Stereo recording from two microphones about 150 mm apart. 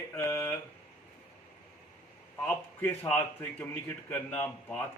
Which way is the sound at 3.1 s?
15° left (ahead or behind).